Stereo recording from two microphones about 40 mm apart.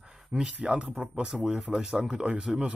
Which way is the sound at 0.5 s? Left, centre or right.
Right.